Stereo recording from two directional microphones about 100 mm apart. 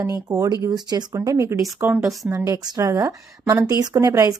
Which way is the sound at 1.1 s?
30° right (ahead or behind).